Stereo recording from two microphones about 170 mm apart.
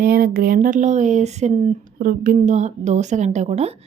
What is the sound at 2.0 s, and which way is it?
A woman's voice, 50° right (ahead or behind).